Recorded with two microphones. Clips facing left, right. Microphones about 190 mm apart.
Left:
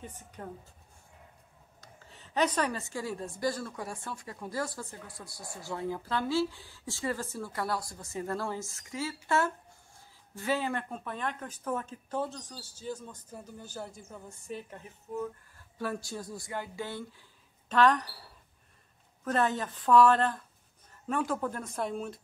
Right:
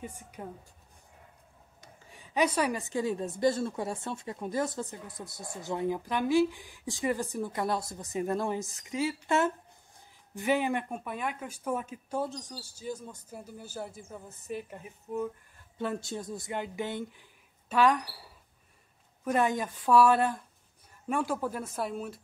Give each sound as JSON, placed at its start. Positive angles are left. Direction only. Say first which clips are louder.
{"t": 0.0, "sound": "speech", "louder": "right 3 dB", "side_deg": -10}
{"t": 1.8, "sound": "a woman's voice", "louder": "right 1 dB", "side_deg": -10}
{"t": 15.8, "sound": "speech", "louder": "right 2 dB", "side_deg": -20}